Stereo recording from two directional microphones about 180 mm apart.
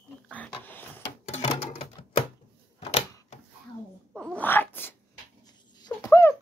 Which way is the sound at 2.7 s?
35° left (ahead or behind).